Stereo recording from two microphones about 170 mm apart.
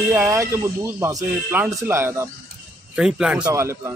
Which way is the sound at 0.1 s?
15° right (ahead or behind).